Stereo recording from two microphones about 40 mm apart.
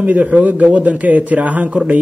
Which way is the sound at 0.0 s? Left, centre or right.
Right.